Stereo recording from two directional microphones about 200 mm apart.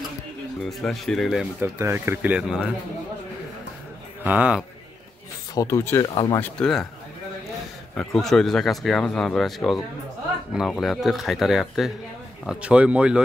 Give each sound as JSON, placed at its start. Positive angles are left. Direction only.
{"t": 0.7, "sound": "speech", "side_deg": 0}
{"t": 4.2, "sound": "speech", "side_deg": -10}
{"t": 5.5, "sound": "speech", "side_deg": 15}
{"t": 6.6, "sound": "speech", "side_deg": 0}
{"t": 7.9, "sound": "speech", "side_deg": 5}